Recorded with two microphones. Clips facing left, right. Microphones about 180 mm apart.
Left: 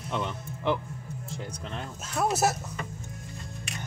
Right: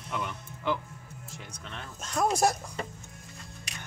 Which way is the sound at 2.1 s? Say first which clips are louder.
Even; 5° left (ahead or behind).